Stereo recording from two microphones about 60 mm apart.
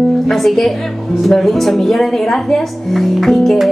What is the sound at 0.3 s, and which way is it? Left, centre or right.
Speech, centre.